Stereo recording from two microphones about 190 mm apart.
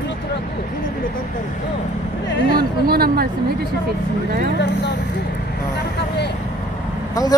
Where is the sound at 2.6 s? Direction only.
55° right (ahead or behind).